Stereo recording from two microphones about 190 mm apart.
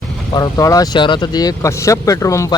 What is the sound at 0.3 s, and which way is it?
Speech, 20° left (ahead or behind).